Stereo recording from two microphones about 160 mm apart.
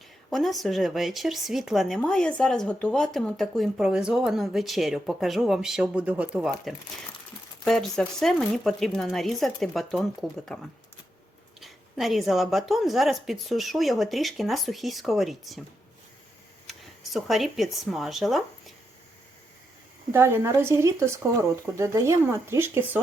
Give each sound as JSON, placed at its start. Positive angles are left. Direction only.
{"t": 0.3, "sound": "speech", "side_deg": 0}
{"t": 11.6, "sound": "speech", "side_deg": 0}
{"t": 16.6, "sound": "speech", "side_deg": 0}
{"t": 20.1, "sound": "speech", "side_deg": -15}